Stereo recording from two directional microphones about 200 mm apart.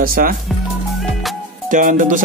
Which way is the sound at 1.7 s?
40° right (ahead or behind).